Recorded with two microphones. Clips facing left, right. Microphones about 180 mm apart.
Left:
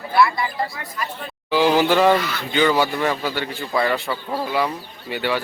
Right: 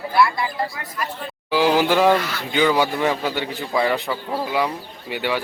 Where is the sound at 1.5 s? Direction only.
10° right (ahead or behind).